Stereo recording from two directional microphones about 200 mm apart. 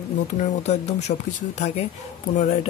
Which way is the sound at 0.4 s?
35° left (ahead or behind).